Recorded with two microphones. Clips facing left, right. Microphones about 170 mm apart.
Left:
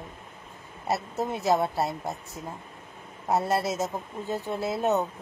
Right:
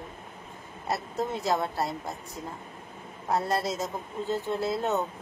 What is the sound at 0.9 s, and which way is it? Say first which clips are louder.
Speech: left 1 dB; 15° left (ahead or behind).